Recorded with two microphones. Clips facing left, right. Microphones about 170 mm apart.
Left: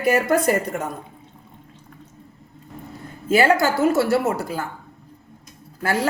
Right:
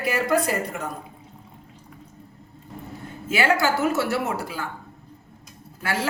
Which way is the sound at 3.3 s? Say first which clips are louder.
Left 4 dB; 35° left (ahead or behind).